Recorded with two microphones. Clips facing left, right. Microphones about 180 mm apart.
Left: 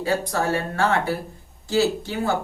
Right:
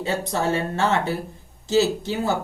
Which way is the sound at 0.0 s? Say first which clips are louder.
Left 1 dB; 20° right (ahead or behind).